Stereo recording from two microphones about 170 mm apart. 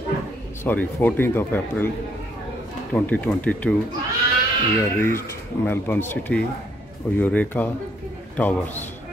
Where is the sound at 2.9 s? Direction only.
10° left (ahead or behind).